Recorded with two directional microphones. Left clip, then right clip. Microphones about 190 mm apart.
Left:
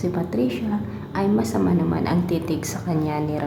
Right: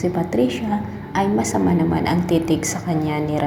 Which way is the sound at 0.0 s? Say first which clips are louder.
Right 4 dB; centre (ahead or behind).